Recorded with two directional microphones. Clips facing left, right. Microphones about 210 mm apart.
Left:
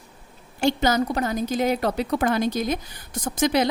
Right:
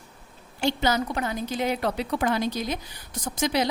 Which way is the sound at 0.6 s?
45° left (ahead or behind).